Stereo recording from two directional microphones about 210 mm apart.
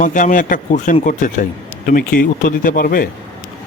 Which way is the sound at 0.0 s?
40° left (ahead or behind).